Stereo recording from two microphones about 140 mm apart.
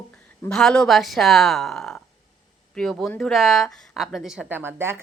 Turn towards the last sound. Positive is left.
turn(degrees=-15)  # may be behind; listen again after turning